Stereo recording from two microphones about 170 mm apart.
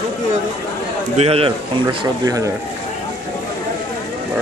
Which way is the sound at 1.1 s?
35° right (ahead or behind).